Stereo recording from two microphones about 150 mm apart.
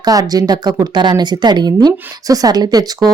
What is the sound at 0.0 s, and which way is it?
A woman's voice, 25° right (ahead or behind).